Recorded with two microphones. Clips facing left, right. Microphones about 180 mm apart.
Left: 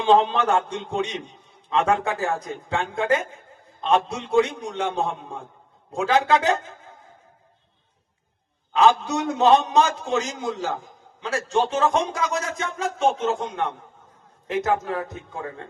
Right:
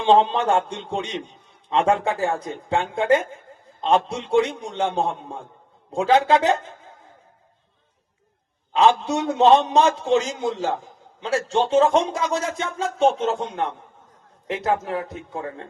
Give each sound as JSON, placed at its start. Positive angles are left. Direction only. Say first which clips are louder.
{"t": 0.0, "sound": "a man's voice", "louder": "right 1 dB", "side_deg": -30}
{"t": 8.7, "sound": "a man's voice", "louder": "right 1 dB", "side_deg": -30}